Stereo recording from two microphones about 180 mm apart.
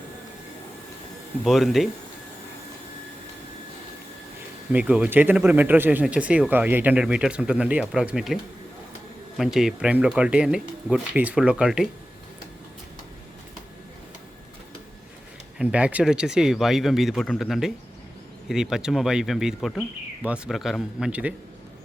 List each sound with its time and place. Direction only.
1.5 s speech: centre (ahead or behind)
4.7 s speech: 5° right (ahead or behind)
9.4 s speech: centre (ahead or behind)
15.5 s speech: 5° right (ahead or behind)